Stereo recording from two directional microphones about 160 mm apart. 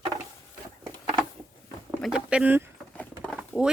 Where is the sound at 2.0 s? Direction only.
5° right (ahead or behind).